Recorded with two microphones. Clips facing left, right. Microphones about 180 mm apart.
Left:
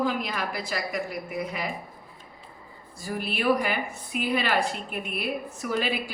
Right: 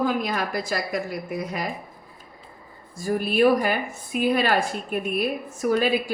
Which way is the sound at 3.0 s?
45° right (ahead or behind).